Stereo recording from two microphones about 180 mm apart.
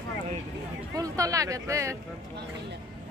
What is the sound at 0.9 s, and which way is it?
A woman's voice, 20° right (ahead or behind).